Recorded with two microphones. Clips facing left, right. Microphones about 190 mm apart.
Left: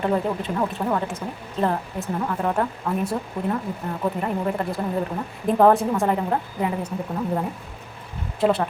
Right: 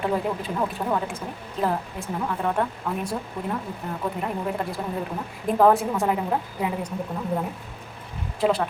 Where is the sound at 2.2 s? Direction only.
Centre (ahead or behind).